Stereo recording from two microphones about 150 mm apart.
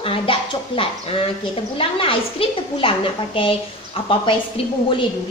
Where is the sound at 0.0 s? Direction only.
35° left (ahead or behind).